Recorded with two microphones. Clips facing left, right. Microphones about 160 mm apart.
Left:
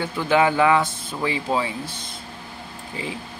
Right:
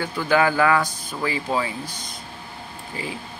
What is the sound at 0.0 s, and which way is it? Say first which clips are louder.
A man's voice: left 1 dB; 20° left (ahead or behind).